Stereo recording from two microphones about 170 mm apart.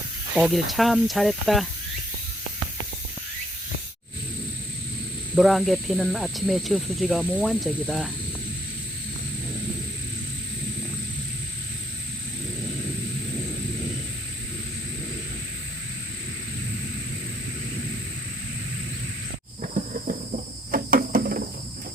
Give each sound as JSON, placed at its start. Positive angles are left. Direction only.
{"t": 0.3, "sound": "speech", "side_deg": 0}
{"t": 5.3, "sound": "speech", "side_deg": 0}
{"t": 19.6, "sound": "cricket", "side_deg": -50}